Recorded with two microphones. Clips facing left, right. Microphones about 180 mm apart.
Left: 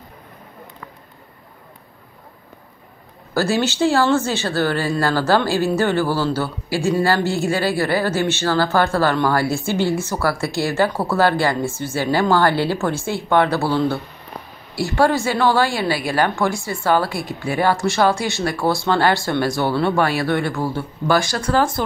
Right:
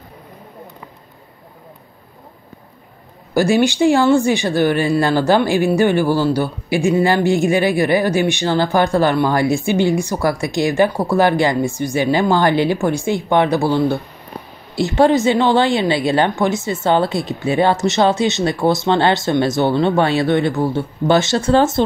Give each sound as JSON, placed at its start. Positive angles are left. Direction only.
{"t": 3.3, "sound": "a woman's voice", "side_deg": -15}